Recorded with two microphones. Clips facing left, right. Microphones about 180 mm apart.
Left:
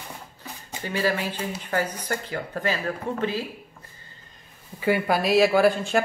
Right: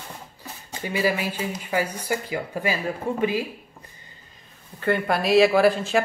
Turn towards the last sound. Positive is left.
turn(degrees=0)  # may be behind; listen again after turning